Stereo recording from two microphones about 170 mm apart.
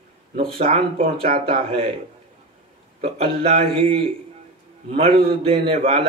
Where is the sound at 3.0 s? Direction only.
35° right (ahead or behind).